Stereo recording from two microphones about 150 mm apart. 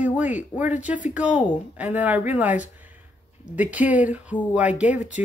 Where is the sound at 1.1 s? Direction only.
10° right (ahead or behind).